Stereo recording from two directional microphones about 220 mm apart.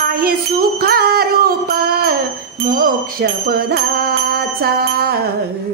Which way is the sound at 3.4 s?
45° right (ahead or behind).